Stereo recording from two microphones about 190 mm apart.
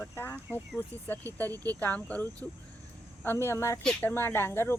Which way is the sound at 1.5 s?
20° right (ahead or behind).